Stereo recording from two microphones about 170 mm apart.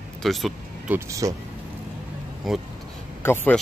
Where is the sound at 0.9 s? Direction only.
20° right (ahead or behind).